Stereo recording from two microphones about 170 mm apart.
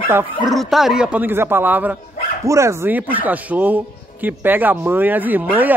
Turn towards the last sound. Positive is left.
turn(degrees=-10)  # may be behind; listen again after turning